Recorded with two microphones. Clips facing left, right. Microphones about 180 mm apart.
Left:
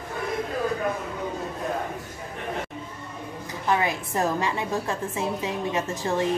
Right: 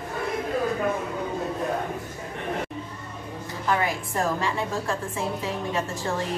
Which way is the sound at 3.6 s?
20° left (ahead or behind).